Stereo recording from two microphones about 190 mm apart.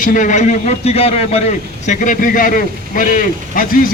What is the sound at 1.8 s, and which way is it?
A man's voice, 45° left (ahead or behind).